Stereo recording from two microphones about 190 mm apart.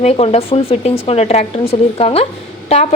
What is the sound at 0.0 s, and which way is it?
A woman's voice, 35° left (ahead or behind).